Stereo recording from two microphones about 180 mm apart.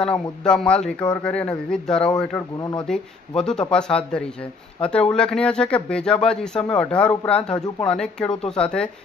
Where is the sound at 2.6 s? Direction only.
20° left (ahead or behind).